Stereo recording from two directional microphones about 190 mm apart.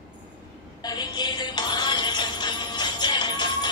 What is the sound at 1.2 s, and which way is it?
Music, 20° left (ahead or behind).